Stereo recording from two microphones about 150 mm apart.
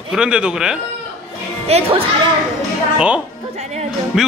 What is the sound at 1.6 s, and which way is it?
Speech, 40° right (ahead or behind).